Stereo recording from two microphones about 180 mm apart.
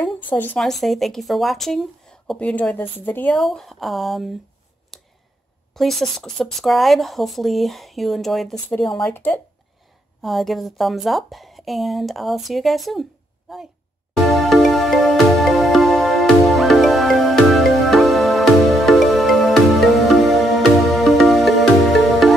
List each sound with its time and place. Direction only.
0.0 s speech: 10° left (ahead or behind)
3.4 s speech: centre (ahead or behind)
4.9 s a sound: centre (ahead or behind)
5.8 s speech: centre (ahead or behind)
10.2 s a woman's voice: centre (ahead or behind)
14.3 s music: centre (ahead or behind)